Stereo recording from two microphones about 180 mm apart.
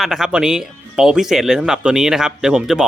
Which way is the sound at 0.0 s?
Centre (ahead or behind).